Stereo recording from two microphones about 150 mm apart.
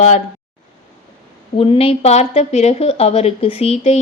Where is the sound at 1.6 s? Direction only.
40° left (ahead or behind).